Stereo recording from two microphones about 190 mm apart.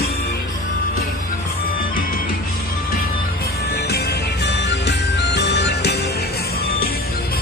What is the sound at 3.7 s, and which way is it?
Music, 60° left (ahead or behind).